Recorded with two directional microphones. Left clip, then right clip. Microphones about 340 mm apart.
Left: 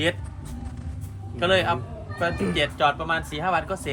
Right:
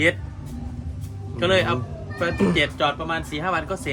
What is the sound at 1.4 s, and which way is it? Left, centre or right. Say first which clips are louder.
Speech: right 1 dB; centre.